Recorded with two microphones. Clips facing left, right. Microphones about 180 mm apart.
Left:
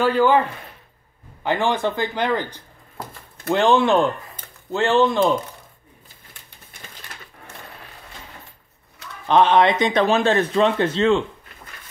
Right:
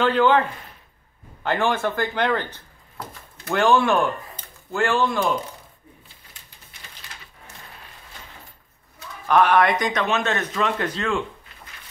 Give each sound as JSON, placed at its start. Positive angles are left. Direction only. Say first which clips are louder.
{"t": 0.0, "sound": "speech", "louder": "left 1 dB", "side_deg": 10}
{"t": 1.4, "sound": "speech", "louder": "left 1 dB", "side_deg": 15}
{"t": 9.3, "sound": "speech", "louder": "left 2 dB", "side_deg": 20}